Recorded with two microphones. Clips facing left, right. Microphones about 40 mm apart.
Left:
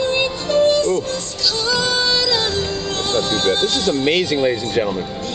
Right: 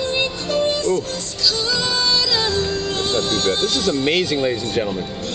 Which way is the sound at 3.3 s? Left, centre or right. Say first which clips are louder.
Left 4 dB; left.